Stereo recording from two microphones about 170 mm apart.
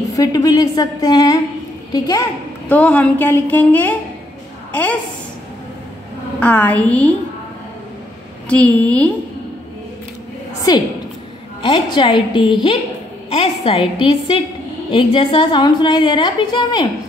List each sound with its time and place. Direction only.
0.1 s a woman's voice: 20° left (ahead or behind)
2.7 s a woman's voice: 10° left (ahead or behind)
6.4 s a woman's voice: 10° left (ahead or behind)
8.5 s a woman's voice: 10° left (ahead or behind)
10.7 s a woman's voice: 25° left (ahead or behind)